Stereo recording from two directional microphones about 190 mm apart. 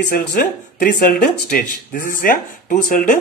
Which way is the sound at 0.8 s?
50° left (ahead or behind).